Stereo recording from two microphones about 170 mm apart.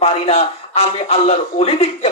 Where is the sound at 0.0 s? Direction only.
35° left (ahead or behind).